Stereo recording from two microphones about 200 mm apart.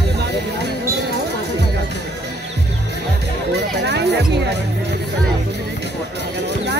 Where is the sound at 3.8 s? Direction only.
55° right (ahead or behind).